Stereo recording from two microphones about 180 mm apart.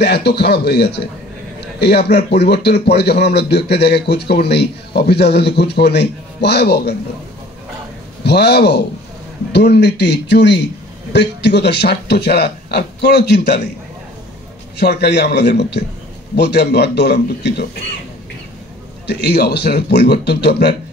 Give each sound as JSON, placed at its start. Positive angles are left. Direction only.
{"t": 0.0, "sound": "speech", "side_deg": 65}
{"t": 8.2, "sound": "speech", "side_deg": 65}
{"t": 14.8, "sound": "speech", "side_deg": 65}
{"t": 19.0, "sound": "speech", "side_deg": 65}